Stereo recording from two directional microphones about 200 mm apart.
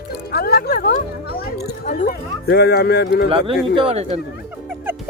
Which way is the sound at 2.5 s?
50° left (ahead or behind).